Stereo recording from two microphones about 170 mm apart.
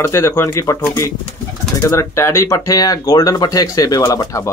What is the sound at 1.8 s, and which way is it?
A man's voice, 20° left (ahead or behind).